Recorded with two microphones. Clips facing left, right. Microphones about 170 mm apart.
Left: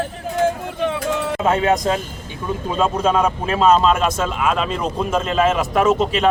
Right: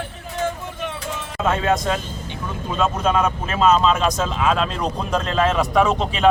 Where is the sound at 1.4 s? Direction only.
40° left (ahead or behind).